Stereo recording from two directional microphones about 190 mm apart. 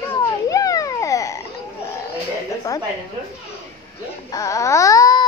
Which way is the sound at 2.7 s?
20° left (ahead or behind).